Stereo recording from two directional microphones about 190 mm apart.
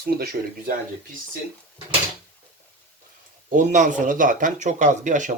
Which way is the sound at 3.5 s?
40° right (ahead or behind).